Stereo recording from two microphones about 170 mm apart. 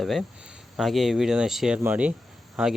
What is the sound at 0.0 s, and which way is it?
Speech, centre (ahead or behind).